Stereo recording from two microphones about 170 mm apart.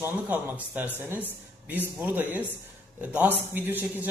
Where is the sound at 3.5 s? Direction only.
10° right (ahead or behind).